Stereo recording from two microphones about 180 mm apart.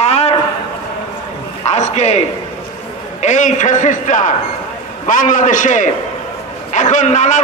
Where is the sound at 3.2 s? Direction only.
40° left (ahead or behind).